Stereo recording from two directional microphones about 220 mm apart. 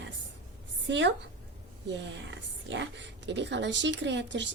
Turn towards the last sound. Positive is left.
turn(degrees=-55)  # may be behind; listen again after turning